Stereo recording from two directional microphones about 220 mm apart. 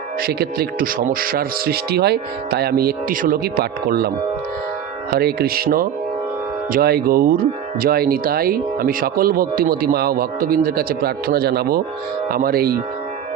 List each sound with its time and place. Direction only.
0.2 s speech: 45° right (ahead or behind)
5.1 s speech: 45° right (ahead or behind)